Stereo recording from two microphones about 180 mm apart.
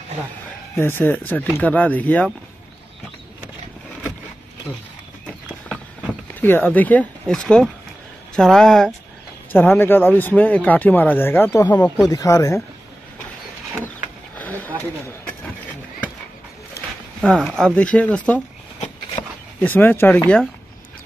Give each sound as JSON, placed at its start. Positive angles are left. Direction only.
{"t": 0.7, "sound": "speech", "side_deg": 10}
{"t": 6.4, "sound": "speech", "side_deg": 10}
{"t": 14.4, "sound": "a sound", "side_deg": 10}
{"t": 17.2, "sound": "speech", "side_deg": 0}
{"t": 19.2, "sound": "a sound", "side_deg": 30}
{"t": 19.6, "sound": "speech", "side_deg": 10}